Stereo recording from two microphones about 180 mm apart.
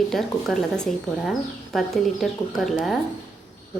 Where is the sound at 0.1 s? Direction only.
Centre (ahead or behind).